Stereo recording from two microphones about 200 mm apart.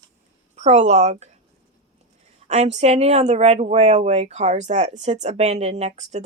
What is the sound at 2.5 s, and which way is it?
A woman's voice, 35° right (ahead or behind).